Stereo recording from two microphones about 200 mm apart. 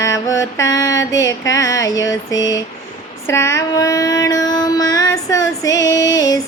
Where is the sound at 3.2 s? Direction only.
15° left (ahead or behind).